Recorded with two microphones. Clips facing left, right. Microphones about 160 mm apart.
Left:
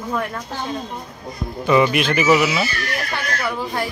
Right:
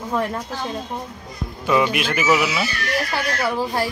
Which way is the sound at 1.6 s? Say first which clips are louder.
Left 3 dB; centre (ahead or behind).